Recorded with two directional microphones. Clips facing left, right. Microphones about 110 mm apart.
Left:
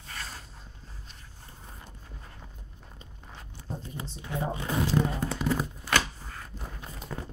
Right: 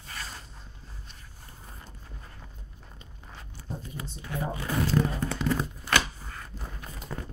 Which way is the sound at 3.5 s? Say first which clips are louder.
Even; 25° left (ahead or behind).